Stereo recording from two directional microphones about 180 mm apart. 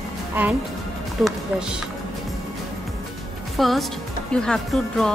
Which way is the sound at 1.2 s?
5° right (ahead or behind).